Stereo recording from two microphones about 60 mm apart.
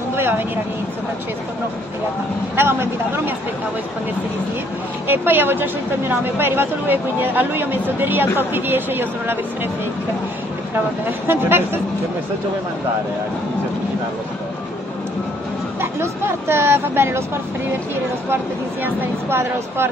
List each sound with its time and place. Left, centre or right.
0.1 s vehicle: right
2.5 s speech: right
5.0 s speech: right
11.1 s speech: right
15.8 s speech: right
18.3 s speech: right